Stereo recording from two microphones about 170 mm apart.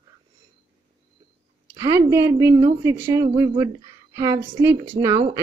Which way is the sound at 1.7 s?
20° right (ahead or behind).